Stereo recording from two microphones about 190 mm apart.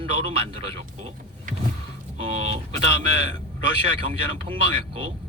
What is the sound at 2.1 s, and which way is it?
A man's voice, 30° right (ahead or behind).